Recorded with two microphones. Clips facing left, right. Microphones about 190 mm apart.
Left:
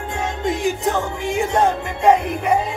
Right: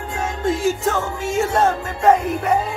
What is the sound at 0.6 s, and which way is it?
Music, 15° left (ahead or behind).